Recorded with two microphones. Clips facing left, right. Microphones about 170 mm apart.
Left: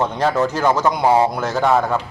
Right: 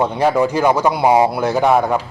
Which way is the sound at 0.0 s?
10° right (ahead or behind).